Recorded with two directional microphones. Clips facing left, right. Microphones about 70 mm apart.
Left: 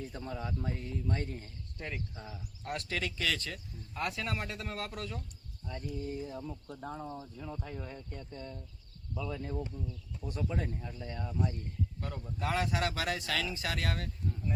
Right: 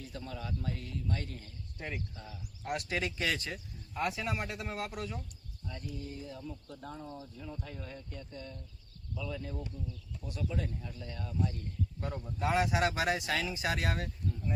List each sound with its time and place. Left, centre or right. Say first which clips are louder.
0.0 s speech: left 3 dB; left
2.6 s speech: right 2 dB; centre
5.8 s speech: left 5 dB; left
11.9 s a man's voice: right 2 dB; right